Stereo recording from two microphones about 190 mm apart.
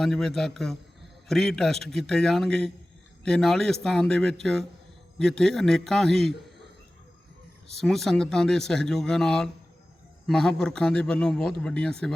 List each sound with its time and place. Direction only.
0.0 s speech: centre (ahead or behind)
7.8 s speech: centre (ahead or behind)